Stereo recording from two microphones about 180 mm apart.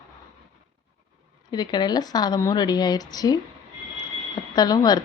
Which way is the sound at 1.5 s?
25° left (ahead or behind).